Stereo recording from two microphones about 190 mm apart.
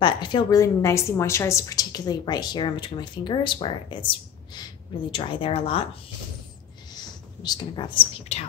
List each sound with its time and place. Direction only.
0.0 s a woman's voice: 25° left (ahead or behind)
7.4 s a woman's voice: 25° left (ahead or behind)